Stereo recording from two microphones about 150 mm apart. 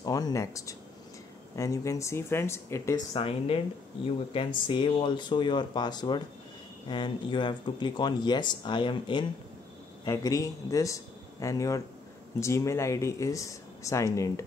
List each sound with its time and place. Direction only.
0.0 s a sound: 25° left (ahead or behind)
1.6 s speech: 20° left (ahead or behind)
3.2 s speech: 40° left (ahead or behind)
10.0 s speech: 20° left (ahead or behind)